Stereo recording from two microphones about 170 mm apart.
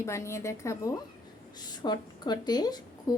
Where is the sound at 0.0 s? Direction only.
15° left (ahead or behind).